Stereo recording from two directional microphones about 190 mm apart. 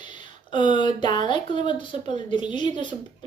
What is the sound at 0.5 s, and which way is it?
Speech, 25° left (ahead or behind).